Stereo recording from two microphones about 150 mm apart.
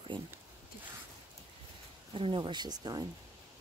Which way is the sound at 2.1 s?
35° right (ahead or behind).